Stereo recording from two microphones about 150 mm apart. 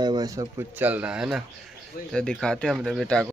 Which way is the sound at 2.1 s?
5° left (ahead or behind).